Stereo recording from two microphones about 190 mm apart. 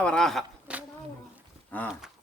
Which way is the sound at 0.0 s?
5° left (ahead or behind).